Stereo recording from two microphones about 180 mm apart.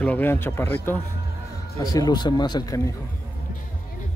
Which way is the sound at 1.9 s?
25° left (ahead or behind).